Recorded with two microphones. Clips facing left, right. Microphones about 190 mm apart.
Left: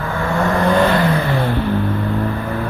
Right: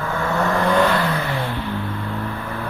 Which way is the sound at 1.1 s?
35° left (ahead or behind).